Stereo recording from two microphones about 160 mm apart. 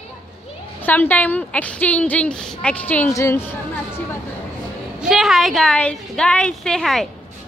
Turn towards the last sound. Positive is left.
turn(degrees=0)  # may be behind; listen again after turning